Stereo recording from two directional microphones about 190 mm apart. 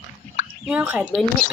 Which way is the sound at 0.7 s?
5° right (ahead or behind).